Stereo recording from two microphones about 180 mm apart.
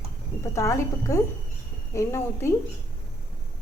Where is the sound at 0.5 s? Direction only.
15° left (ahead or behind).